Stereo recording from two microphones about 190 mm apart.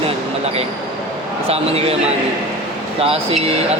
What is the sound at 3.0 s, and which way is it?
Speech, 30° right (ahead or behind).